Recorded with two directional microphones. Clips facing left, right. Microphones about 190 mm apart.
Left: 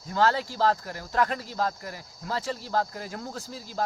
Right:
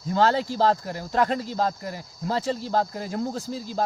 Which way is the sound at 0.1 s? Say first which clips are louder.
Right 3 dB; 25° right (ahead or behind).